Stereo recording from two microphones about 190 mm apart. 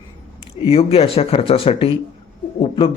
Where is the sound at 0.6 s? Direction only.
30° left (ahead or behind).